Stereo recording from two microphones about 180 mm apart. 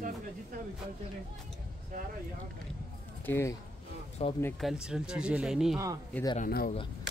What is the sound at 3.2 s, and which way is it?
Speech, 15° left (ahead or behind).